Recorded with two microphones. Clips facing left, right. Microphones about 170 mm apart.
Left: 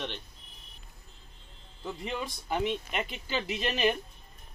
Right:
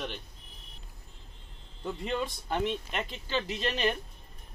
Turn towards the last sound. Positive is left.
turn(degrees=5)  # may be behind; listen again after turning